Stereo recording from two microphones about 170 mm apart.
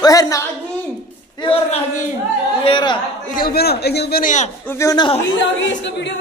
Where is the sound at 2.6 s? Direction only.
30° left (ahead or behind).